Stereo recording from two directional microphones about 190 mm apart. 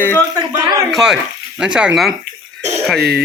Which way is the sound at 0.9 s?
Centre (ahead or behind).